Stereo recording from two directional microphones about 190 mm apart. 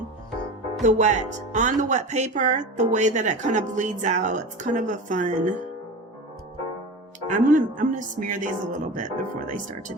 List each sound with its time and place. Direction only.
0.8 s speech: 40° right (ahead or behind)
7.3 s a woman's voice: 40° right (ahead or behind)